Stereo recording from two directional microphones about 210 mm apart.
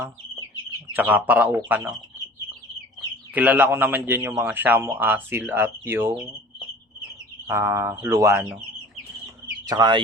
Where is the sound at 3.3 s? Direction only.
10° right (ahead or behind).